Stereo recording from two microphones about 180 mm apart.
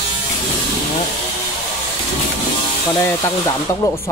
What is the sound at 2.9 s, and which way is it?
Speech, 15° left (ahead or behind).